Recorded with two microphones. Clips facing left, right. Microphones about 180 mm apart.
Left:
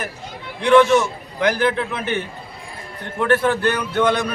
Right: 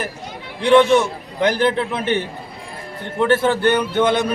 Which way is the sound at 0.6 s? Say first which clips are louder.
Right 1 dB; 30° right (ahead or behind).